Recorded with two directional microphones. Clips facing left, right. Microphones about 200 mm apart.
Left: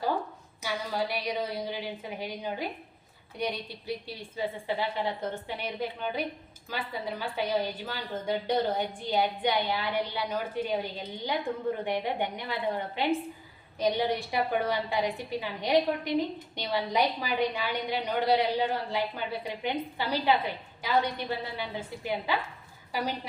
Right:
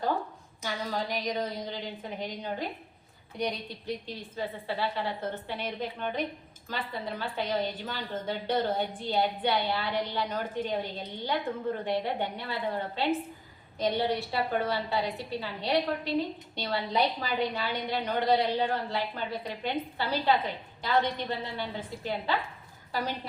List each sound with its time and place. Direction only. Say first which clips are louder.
0.6 s a woman's voice: left 1 dB; 10° left (ahead or behind)